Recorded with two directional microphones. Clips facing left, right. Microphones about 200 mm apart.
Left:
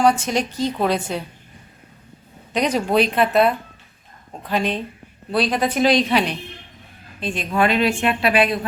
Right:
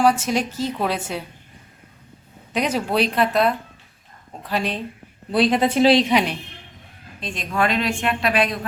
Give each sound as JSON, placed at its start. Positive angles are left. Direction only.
{"t": 0.0, "sound": "a woman's voice", "side_deg": -5}
{"t": 2.5, "sound": "a woman's voice", "side_deg": -5}
{"t": 5.3, "sound": "speech", "side_deg": -20}
{"t": 6.1, "sound": "a woman's voice", "side_deg": -15}
{"t": 7.2, "sound": "a woman's voice", "side_deg": 5}